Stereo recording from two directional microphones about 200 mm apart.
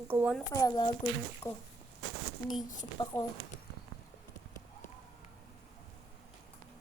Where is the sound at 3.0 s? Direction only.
20° left (ahead or behind).